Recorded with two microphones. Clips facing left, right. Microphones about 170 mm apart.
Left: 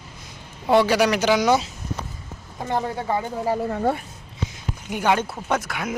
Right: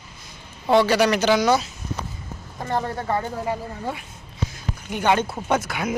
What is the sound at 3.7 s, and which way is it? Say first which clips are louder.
Speech: left 8 dB; 55° left (ahead or behind).